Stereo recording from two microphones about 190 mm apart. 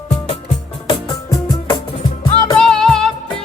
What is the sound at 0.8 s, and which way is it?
Music, 25° left (ahead or behind).